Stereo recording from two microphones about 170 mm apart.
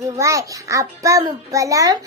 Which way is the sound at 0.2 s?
20° right (ahead or behind).